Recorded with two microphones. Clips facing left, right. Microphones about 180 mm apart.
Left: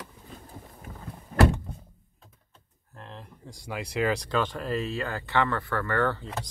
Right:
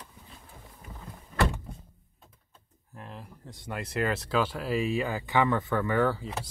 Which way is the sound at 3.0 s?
5° right (ahead or behind).